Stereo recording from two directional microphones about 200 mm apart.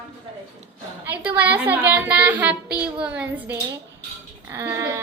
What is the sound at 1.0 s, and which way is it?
A woman's voice, 10° right (ahead or behind).